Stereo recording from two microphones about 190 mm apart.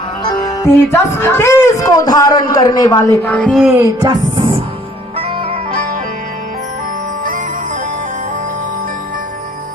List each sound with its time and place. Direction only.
0.2 s speech: 20° left (ahead or behind); by 3.8 s centre (ahead or behind)
4.0 s music: 25° right (ahead or behind)